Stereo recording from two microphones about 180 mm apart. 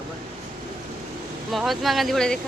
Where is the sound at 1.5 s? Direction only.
Centre (ahead or behind).